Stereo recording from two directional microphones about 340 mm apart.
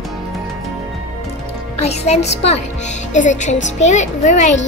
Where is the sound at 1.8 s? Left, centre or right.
Centre.